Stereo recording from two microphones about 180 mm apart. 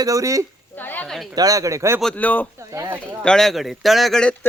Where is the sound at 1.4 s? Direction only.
20° right (ahead or behind).